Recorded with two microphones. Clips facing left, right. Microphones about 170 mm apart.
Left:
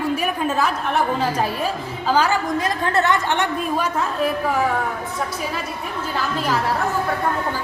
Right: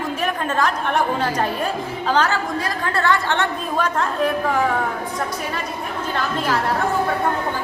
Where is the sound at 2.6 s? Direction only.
20° left (ahead or behind).